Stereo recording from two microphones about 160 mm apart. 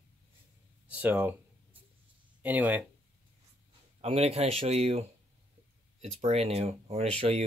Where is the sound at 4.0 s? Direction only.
35° right (ahead or behind).